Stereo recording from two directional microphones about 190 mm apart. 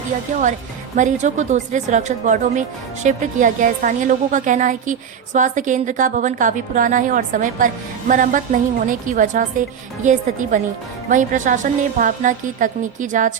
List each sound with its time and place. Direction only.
0.9 s a woman's voice: 40° right (ahead or behind)